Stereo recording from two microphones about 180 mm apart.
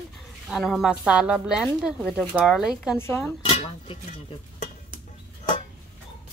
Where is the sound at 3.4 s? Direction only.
30° left (ahead or behind).